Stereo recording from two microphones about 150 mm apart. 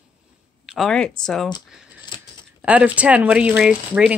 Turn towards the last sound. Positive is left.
turn(degrees=-5)  # may be behind; listen again after turning